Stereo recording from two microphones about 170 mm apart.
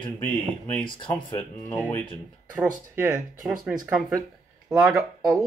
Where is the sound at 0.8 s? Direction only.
30° left (ahead or behind).